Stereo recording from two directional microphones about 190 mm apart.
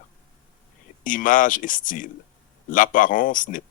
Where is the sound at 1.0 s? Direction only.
45° left (ahead or behind).